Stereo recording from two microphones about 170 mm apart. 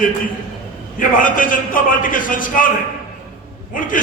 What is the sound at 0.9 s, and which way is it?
A man's voice, 55° left (ahead or behind).